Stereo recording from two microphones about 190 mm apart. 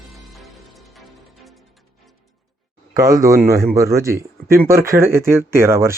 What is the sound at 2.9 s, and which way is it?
Speech, 20° right (ahead or behind).